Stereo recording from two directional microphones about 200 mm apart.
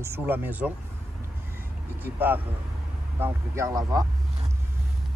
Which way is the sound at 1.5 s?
10° right (ahead or behind).